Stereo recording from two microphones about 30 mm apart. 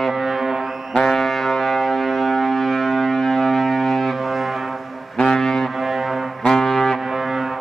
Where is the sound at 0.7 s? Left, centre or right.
Centre.